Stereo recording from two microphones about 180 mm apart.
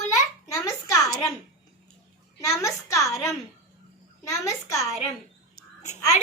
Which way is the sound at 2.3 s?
15° left (ahead or behind).